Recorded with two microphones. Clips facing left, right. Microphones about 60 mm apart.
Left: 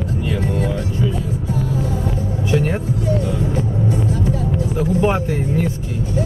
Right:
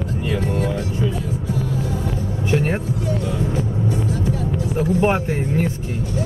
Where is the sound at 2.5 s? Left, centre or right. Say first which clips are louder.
Left 1 dB; right.